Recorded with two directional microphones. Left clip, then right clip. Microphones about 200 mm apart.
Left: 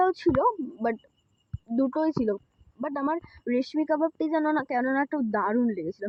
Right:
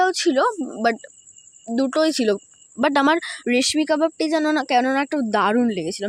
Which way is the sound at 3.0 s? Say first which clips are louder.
Right 11 dB; 40° right (ahead or behind).